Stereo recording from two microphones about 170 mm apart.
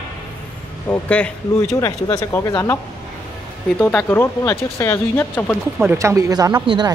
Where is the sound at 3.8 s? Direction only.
5° left (ahead or behind).